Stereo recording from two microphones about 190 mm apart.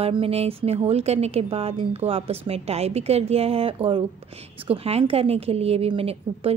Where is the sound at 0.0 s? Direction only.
30° right (ahead or behind).